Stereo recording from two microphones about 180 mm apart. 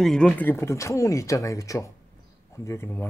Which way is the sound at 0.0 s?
5° left (ahead or behind).